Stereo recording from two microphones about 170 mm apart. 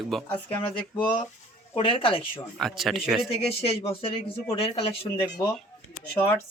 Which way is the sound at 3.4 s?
35° left (ahead or behind).